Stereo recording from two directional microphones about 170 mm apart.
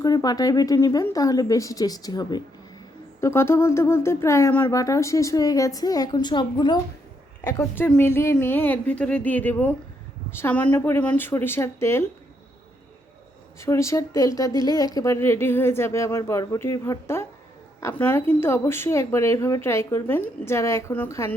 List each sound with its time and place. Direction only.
0.0 s speech: 25° left (ahead or behind)
7.4 s speech: 15° left (ahead or behind)
13.6 s speech: 15° left (ahead or behind)